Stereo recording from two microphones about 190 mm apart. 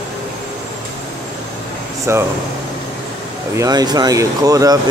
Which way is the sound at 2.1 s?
15° right (ahead or behind).